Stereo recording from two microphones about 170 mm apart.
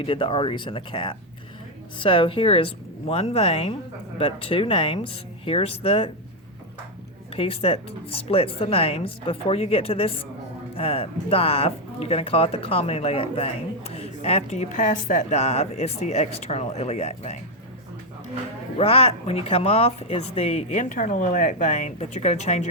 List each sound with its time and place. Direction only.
0.0 s speech: 30° left (ahead or behind)
7.3 s speech: 35° left (ahead or behind)
18.8 s speech: 35° left (ahead or behind)